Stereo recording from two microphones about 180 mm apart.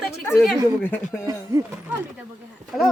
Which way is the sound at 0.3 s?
Centre (ahead or behind).